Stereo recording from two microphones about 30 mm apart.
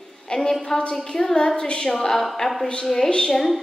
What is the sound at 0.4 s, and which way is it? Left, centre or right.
Speech, centre.